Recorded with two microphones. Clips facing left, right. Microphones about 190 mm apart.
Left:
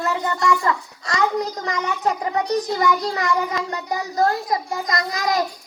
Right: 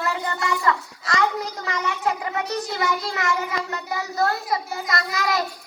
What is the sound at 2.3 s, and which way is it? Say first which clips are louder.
A child's voice: left 5 dB; 40° left (ahead or behind).